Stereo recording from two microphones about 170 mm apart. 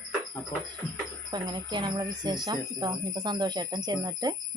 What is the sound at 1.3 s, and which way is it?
Speech, 25° right (ahead or behind).